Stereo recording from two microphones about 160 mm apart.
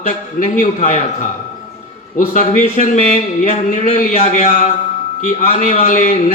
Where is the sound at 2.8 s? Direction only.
50° left (ahead or behind).